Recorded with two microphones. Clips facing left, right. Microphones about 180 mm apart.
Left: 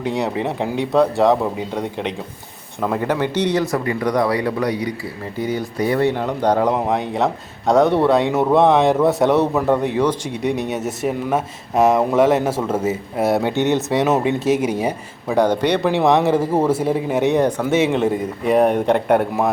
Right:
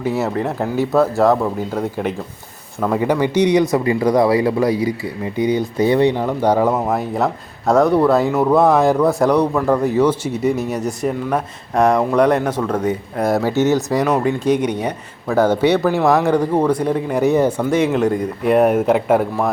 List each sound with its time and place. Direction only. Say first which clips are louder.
0.0 s speech: right 2 dB; 5° right (ahead or behind)
3.1 s speech: right 6 dB; 10° right (ahead or behind); by 15.4 s 10° left (ahead or behind)
15.4 s speech: right 2 dB; 5° right (ahead or behind)